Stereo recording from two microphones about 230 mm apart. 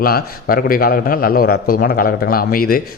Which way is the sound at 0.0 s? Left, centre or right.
Left.